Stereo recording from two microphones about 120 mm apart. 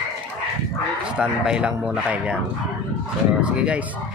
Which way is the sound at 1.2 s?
10° right (ahead or behind).